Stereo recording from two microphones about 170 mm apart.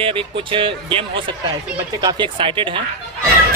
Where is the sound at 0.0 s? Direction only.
30° right (ahead or behind).